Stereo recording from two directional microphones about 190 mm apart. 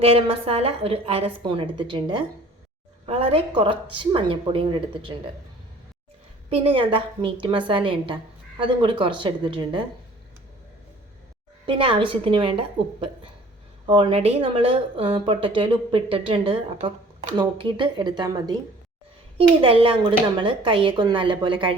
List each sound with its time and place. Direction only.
0.0 s a woman's voice: 30° right (ahead or behind)
6.5 s a woman's voice: 30° right (ahead or behind)
11.6 s a woman's voice: 25° right (ahead or behind)
13.8 s a woman's voice: 25° right (ahead or behind)